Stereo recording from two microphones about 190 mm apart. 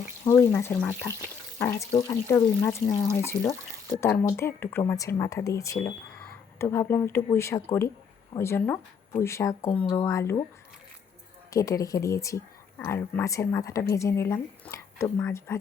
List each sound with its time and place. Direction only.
0.3 s speech: 15° left (ahead or behind)
11.5 s speech: 15° left (ahead or behind)